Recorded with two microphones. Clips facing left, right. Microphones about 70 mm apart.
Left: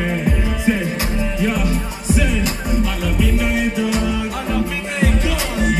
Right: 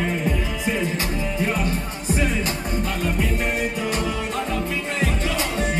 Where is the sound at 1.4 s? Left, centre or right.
Right.